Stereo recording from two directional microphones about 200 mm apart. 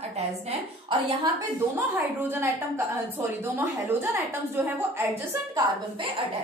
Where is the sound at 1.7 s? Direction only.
10° right (ahead or behind).